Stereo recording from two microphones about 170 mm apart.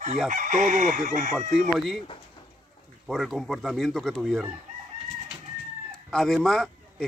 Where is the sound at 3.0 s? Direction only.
Centre (ahead or behind).